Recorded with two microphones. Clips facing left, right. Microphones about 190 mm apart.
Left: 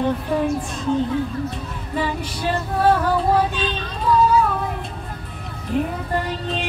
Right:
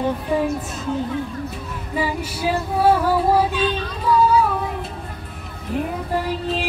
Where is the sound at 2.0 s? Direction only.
10° right (ahead or behind).